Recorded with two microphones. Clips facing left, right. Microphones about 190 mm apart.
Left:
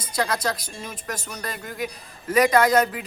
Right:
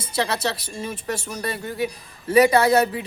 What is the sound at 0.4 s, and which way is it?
Speech, 30° right (ahead or behind).